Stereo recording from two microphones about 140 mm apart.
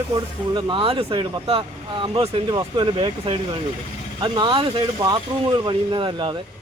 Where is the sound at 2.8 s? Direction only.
40° right (ahead or behind).